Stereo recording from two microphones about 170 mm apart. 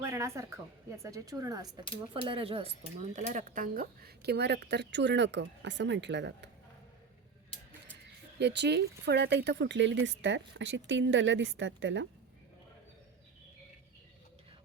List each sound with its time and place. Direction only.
0.0 s a woman's voice: 15° right (ahead or behind)
2.2 s speech: 30° right (ahead or behind); by 6.5 s 90° right
8.4 s speech: 85° right